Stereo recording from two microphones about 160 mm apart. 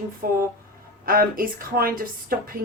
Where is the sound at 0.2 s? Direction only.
65° right (ahead or behind).